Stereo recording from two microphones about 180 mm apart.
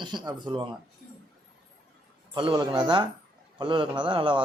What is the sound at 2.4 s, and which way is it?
Speech, 25° right (ahead or behind).